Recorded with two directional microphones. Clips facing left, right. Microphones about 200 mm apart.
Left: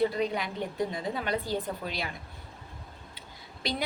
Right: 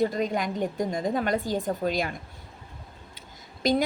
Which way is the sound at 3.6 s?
45° right (ahead or behind).